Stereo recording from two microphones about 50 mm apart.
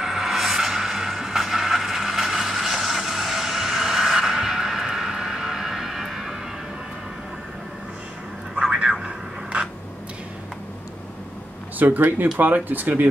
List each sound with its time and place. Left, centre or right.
0.0 s vehicle: centre
9.0 s a sound: right
11.8 s speech: right